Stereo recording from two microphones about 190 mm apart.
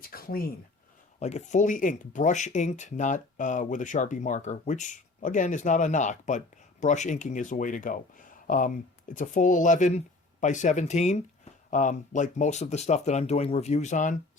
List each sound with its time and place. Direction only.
0.1 s speech: 50° left (ahead or behind)
1.2 s speech: 35° left (ahead or behind)